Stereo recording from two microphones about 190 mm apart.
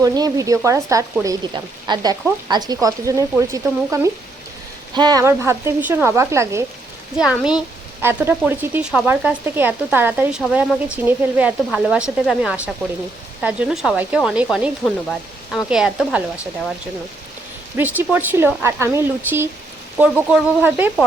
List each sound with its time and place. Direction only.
0.0 s speech: 20° right (ahead or behind)
7.2 s speech: 5° right (ahead or behind)
15.5 s speech: 5° right (ahead or behind)
17.7 s speech: 10° right (ahead or behind)